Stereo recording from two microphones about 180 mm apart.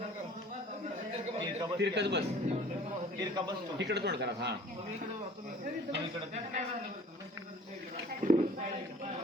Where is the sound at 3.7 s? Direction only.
70° right (ahead or behind).